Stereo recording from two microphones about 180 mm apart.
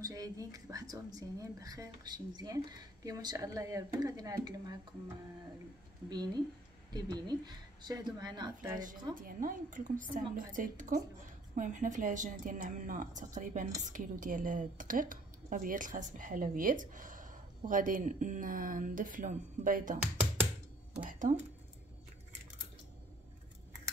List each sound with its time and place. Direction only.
0.0 s speech: 20° right (ahead or behind)
9.1 s speech: 50° right (ahead or behind)
21.0 s speech: 45° right (ahead or behind)